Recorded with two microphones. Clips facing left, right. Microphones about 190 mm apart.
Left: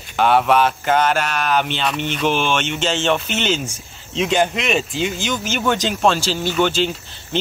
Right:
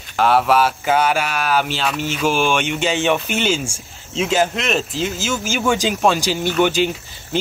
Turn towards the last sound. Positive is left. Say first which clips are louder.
# right 1 dB
turn(degrees=-10)  # may be behind; listen again after turning